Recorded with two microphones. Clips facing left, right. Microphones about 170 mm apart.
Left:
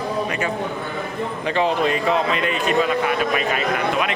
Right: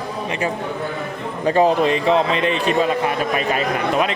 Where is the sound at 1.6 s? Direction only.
35° right (ahead or behind).